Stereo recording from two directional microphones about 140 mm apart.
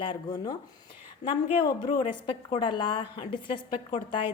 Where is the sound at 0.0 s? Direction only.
35° left (ahead or behind).